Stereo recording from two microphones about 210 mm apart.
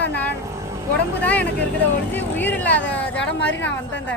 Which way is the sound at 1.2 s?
5° left (ahead or behind).